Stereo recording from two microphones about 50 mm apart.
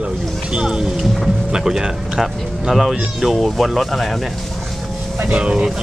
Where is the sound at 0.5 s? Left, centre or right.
Centre.